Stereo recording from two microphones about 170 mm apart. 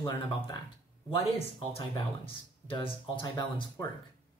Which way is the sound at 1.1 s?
35° left (ahead or behind).